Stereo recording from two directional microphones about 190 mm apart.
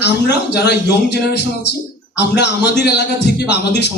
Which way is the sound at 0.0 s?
65° left (ahead or behind).